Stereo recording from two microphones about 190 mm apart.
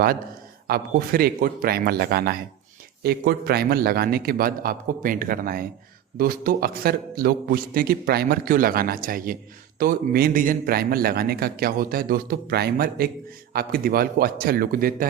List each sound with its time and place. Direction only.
0.7 s a man's voice: 55° right (ahead or behind)